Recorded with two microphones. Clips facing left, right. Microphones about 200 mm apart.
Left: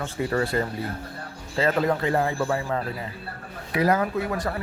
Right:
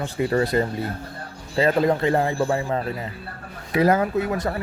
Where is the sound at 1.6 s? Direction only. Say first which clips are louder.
Right 4 dB; 20° right (ahead or behind).